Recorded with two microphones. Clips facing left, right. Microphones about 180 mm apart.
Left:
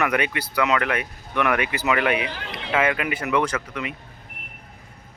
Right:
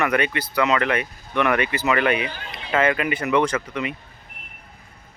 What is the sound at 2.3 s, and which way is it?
Run, 80° left.